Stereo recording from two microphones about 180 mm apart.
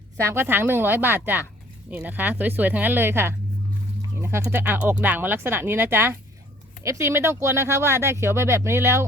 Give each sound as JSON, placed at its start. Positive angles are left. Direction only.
{"t": 0.2, "sound": "speech", "side_deg": -15}